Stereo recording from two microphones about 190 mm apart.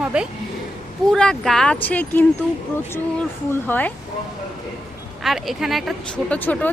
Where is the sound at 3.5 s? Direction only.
10° left (ahead or behind).